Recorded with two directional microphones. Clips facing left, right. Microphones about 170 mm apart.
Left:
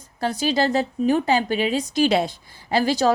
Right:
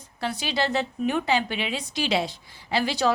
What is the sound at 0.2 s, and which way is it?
A woman's voice, 45° left (ahead or behind).